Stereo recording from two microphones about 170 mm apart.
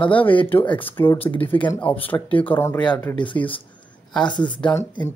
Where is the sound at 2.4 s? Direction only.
10° left (ahead or behind).